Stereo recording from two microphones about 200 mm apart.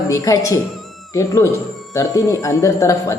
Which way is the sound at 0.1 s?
15° left (ahead or behind).